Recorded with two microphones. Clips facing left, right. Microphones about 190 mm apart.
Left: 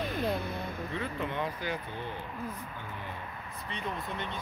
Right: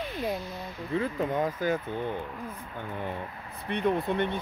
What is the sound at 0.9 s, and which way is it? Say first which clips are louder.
Speech: right 10 dB; 40° right (ahead or behind).